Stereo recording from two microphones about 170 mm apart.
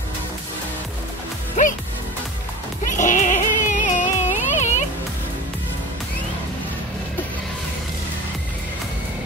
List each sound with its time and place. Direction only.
3.0 s music: 50° left (ahead or behind)